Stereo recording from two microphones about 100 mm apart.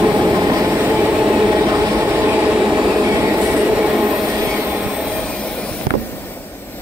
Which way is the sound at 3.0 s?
25° right (ahead or behind).